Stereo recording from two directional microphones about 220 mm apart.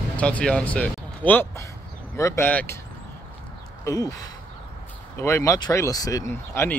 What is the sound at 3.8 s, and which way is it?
Speech, 15° left (ahead or behind).